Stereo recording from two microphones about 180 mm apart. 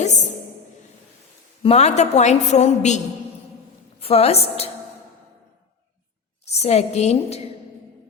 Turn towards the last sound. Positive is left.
turn(degrees=35)  # may be behind; listen again after turning